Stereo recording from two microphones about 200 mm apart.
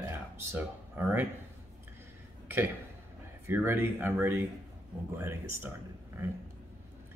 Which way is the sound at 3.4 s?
10° right (ahead or behind).